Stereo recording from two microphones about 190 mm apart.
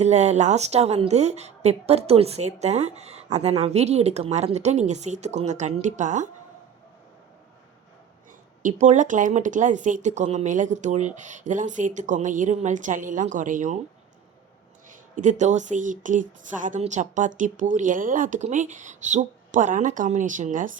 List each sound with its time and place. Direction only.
0.0 s a woman's voice: 35° right (ahead or behind)
8.6 s a woman's voice: 40° right (ahead or behind)
15.1 s a woman's voice: 40° right (ahead or behind)